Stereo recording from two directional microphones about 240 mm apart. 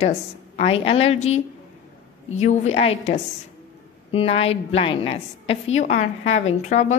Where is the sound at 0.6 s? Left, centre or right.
Left.